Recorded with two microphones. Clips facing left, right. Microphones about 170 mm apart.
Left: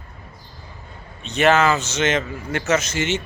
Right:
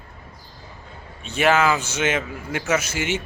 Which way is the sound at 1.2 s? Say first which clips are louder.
Left 2 dB; 10° right (ahead or behind).